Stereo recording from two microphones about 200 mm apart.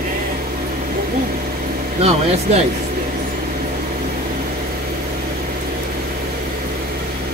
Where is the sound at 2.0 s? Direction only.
30° right (ahead or behind).